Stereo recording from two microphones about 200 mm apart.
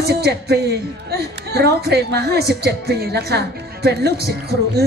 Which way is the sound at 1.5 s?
55° right (ahead or behind).